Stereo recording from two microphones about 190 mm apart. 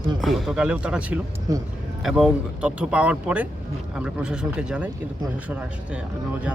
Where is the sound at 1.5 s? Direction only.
20° right (ahead or behind).